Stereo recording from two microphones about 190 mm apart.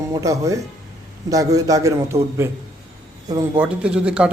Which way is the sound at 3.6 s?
5° right (ahead or behind).